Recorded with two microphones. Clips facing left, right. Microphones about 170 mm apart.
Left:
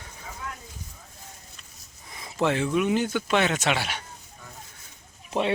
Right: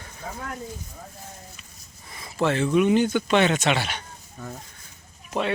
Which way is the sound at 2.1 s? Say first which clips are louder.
Right 1 dB; 20° left (ahead or behind).